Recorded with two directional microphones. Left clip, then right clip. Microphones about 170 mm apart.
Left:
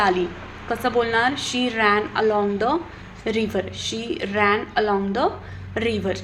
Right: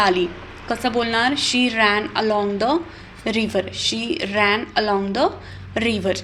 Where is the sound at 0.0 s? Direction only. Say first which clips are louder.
Right 2 dB; 30° right (ahead or behind).